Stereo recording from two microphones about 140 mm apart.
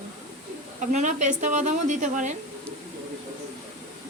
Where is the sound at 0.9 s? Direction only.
60° right (ahead or behind).